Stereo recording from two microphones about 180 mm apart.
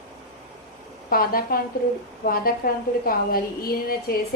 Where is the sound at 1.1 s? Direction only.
55° left (ahead or behind).